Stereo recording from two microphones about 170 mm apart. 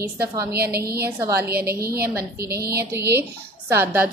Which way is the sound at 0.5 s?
70° right (ahead or behind).